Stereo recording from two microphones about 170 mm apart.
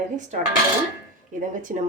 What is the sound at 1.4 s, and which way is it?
Speech, 50° right (ahead or behind).